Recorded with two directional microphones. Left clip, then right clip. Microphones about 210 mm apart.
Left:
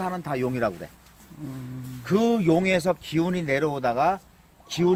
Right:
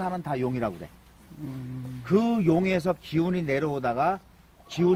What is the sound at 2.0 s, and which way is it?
Speech, 20° left (ahead or behind).